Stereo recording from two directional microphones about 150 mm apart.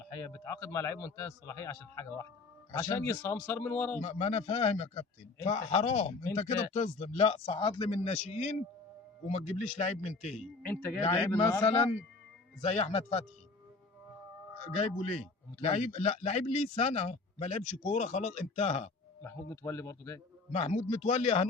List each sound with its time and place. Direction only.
0.1 s a man's voice: 20° left (ahead or behind)
4.0 s speech: 45° left (ahead or behind)
10.6 s a man's voice: 10° left (ahead or behind)
11.6 s speech: 45° left (ahead or behind)
14.6 s speech: 45° left (ahead or behind)
19.2 s a man's voice: 20° left (ahead or behind)
20.5 s speech: 50° left (ahead or behind)